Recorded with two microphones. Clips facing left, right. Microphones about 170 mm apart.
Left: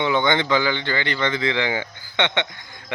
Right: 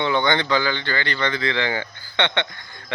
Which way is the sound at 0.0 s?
15° left (ahead or behind).